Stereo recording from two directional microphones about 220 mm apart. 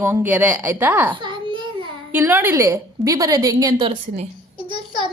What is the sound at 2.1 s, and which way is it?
A woman's voice, 10° right (ahead or behind).